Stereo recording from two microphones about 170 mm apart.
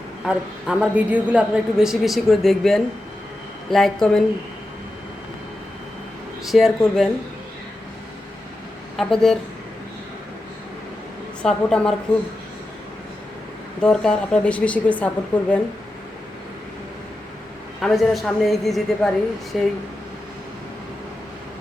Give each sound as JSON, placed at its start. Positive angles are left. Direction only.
{"t": 0.3, "sound": "a woman's voice", "side_deg": -5}
{"t": 6.5, "sound": "a woman's voice", "side_deg": 0}
{"t": 9.0, "sound": "a woman's voice", "side_deg": 5}
{"t": 11.4, "sound": "a woman's voice", "side_deg": 5}
{"t": 13.8, "sound": "a woman's voice", "side_deg": 5}
{"t": 17.7, "sound": "a woman's voice", "side_deg": 0}